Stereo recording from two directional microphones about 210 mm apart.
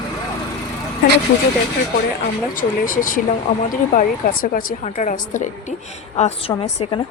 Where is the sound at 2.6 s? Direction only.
40° left (ahead or behind).